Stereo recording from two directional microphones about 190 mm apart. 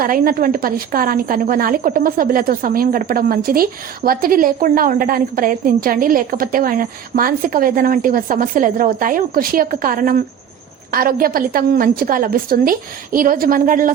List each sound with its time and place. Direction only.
0.0 s a woman's voice: 50° right (ahead or behind)